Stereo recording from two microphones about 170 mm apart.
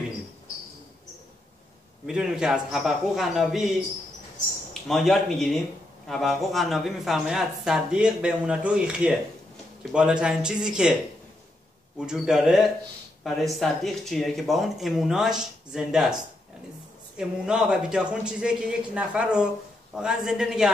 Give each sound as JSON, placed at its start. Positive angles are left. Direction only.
{"t": 2.0, "sound": "speech", "side_deg": -5}
{"t": 4.8, "sound": "speech", "side_deg": 0}
{"t": 12.1, "sound": "speech", "side_deg": -5}
{"t": 17.2, "sound": "speech", "side_deg": -5}